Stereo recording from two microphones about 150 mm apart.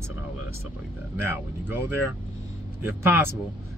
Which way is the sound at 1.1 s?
15° right (ahead or behind).